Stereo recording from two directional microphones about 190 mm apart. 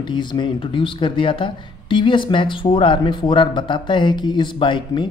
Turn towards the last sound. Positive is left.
turn(degrees=25)  # may be behind; listen again after turning